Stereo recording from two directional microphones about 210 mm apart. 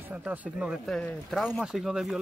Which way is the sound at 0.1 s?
5° right (ahead or behind).